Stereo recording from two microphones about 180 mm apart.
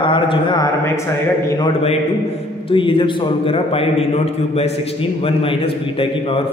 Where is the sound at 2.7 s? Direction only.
30° left (ahead or behind).